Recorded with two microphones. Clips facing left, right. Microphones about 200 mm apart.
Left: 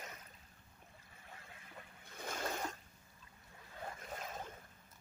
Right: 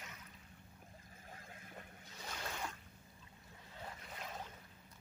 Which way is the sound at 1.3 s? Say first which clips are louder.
Right 1 dB; 45° right (ahead or behind).